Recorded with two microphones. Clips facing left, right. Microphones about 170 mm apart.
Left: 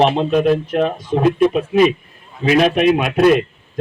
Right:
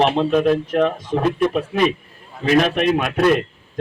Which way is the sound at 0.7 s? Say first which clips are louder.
Left 1 dB; 10° left (ahead or behind).